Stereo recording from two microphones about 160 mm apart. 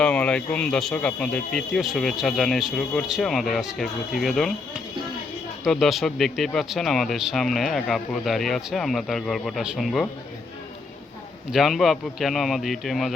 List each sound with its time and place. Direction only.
0.0 s speech: 10° left (ahead or behind)
11.5 s speech: centre (ahead or behind)